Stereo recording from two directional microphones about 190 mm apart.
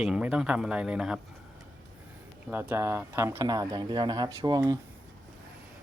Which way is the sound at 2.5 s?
10° right (ahead or behind).